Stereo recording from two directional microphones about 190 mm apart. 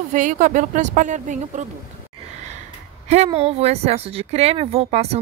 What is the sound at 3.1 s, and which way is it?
Speech, 35° right (ahead or behind).